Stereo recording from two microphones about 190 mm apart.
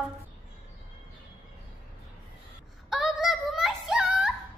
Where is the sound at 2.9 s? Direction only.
Centre (ahead or behind).